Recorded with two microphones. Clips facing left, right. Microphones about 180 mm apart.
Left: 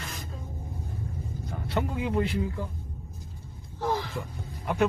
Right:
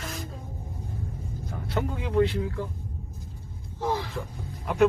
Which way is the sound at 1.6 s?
Centre (ahead or behind).